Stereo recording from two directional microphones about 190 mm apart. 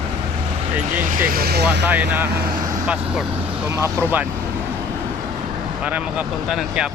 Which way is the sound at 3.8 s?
15° right (ahead or behind).